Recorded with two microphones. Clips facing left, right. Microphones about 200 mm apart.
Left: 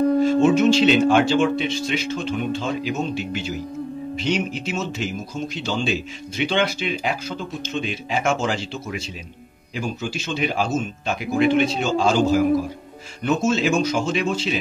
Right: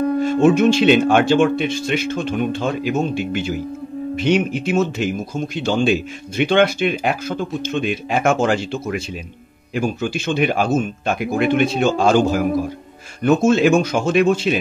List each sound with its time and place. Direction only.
0.2 s speech: 55° right (ahead or behind)